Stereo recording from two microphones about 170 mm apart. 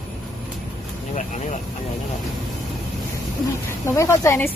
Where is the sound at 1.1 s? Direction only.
45° left (ahead or behind).